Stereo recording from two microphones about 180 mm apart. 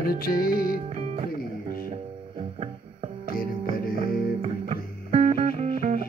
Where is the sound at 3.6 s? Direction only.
40° right (ahead or behind).